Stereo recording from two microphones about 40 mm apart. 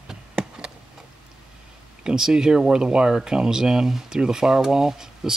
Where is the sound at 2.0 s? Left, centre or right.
Centre.